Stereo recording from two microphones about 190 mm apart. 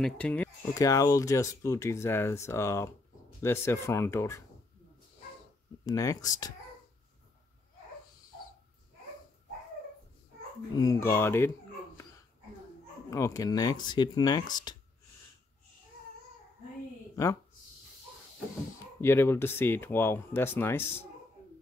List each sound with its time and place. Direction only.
0.0 s speech: 5° left (ahead or behind)
0.7 s speech: 15° left (ahead or behind)
5.9 s speech: 20° left (ahead or behind)
10.8 s speech: 15° left (ahead or behind)
13.1 s speech: 15° left (ahead or behind)
17.1 s speech: 20° left (ahead or behind)
18.9 s speech: 10° left (ahead or behind)